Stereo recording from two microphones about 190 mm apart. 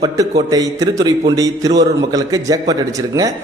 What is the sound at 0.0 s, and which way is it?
A man's voice, 20° right (ahead or behind).